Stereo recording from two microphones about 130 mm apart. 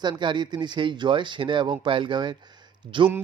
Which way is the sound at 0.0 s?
35° right (ahead or behind).